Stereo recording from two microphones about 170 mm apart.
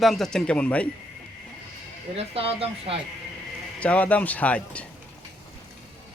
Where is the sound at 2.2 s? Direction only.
35° right (ahead or behind).